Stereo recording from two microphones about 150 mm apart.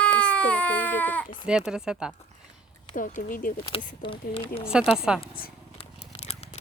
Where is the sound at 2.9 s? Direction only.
65° left (ahead or behind).